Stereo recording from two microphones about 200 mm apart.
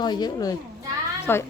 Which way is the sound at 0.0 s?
20° left (ahead or behind).